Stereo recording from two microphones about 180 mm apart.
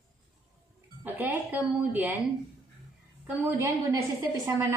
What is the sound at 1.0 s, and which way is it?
A woman's voice, 10° right (ahead or behind).